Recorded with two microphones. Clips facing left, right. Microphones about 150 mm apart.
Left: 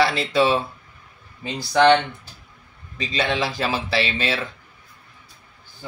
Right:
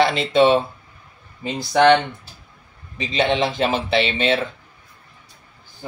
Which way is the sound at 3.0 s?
20° right (ahead or behind).